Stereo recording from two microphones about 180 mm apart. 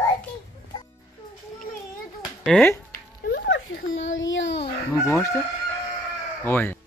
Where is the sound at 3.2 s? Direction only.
70° left (ahead or behind); by 4.6 s 90° left.